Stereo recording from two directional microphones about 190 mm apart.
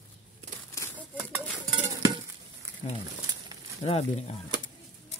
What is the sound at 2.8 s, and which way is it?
Speech, 30° left (ahead or behind).